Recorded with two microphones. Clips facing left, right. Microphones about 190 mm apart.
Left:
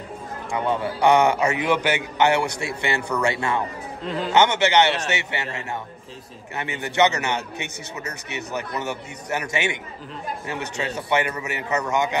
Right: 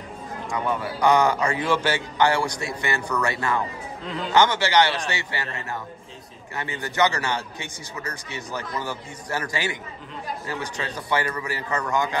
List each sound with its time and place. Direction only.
0.5 s a man's voice: 25° left (ahead or behind)